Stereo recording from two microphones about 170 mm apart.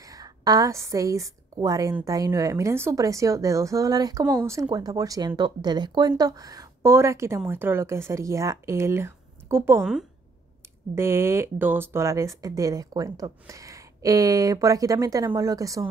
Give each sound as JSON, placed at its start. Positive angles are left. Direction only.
{"t": 0.0, "sound": "a woman's voice", "side_deg": -20}
{"t": 11.0, "sound": "a woman's voice", "side_deg": -15}